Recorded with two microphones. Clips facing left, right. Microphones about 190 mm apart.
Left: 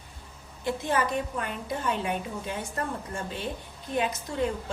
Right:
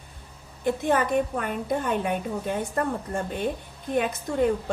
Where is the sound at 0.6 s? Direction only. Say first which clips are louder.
Right 4 dB; 55° right (ahead or behind).